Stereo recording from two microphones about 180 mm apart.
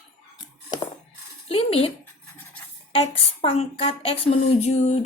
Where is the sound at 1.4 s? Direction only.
30° left (ahead or behind).